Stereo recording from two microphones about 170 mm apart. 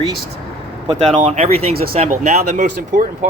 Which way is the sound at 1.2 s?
40° right (ahead or behind).